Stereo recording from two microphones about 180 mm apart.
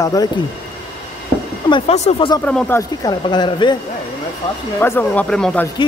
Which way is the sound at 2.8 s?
20° left (ahead or behind).